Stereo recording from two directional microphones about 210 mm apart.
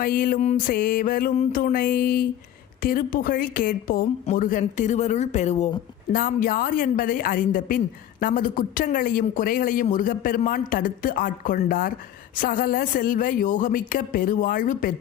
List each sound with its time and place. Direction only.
0.0 s music: 45° left (ahead or behind)
2.8 s speech: 45° left (ahead or behind)